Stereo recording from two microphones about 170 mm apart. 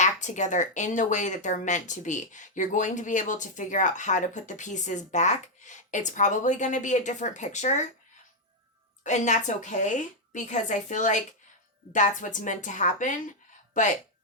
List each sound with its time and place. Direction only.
0.0 s speech: 45° left (ahead or behind)
9.0 s speech: 45° left (ahead or behind)